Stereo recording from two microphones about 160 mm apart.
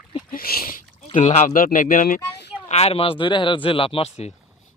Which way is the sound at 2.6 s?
40° left (ahead or behind).